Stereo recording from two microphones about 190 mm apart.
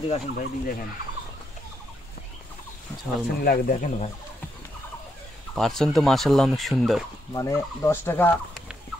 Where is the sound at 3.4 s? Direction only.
45° left (ahead or behind).